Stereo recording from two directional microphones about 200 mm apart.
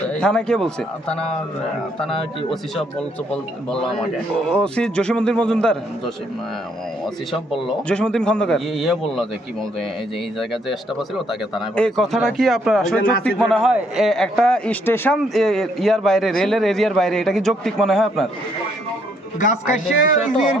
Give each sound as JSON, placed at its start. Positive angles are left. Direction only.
{"t": 0.1, "sound": "speech", "side_deg": 5}
{"t": 3.3, "sound": "speech", "side_deg": 5}
{"t": 7.0, "sound": "speech", "side_deg": 0}
{"t": 19.4, "sound": "speech", "side_deg": 40}